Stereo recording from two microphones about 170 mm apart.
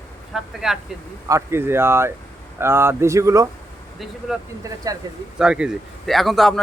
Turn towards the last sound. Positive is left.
turn(degrees=0)  # may be behind; listen again after turning